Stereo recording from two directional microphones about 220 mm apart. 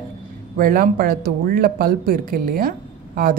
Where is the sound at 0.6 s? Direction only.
40° right (ahead or behind).